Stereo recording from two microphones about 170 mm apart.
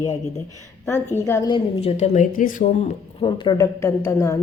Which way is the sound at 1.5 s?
40° left (ahead or behind).